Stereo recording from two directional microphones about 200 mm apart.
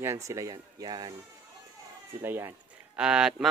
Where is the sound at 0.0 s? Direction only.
15° right (ahead or behind).